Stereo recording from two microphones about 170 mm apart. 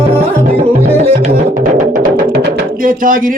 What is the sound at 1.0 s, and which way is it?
Music, 40° right (ahead or behind).